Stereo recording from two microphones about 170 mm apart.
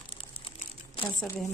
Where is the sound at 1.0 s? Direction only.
35° left (ahead or behind).